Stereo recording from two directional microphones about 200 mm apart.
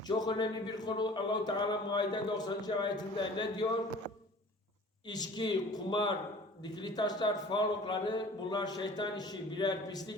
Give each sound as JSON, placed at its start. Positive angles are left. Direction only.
{"t": 0.1, "sound": "speech", "side_deg": 20}
{"t": 5.0, "sound": "speech", "side_deg": 20}